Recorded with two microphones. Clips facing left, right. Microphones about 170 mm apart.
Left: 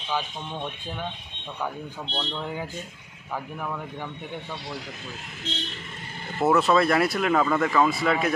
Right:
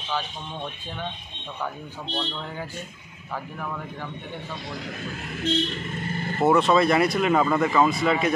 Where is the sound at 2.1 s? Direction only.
10° left (ahead or behind).